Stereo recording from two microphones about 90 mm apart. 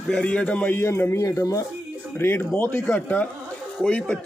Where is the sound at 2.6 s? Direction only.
15° left (ahead or behind).